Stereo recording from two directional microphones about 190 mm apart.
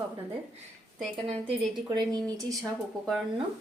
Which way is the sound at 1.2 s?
30° right (ahead or behind).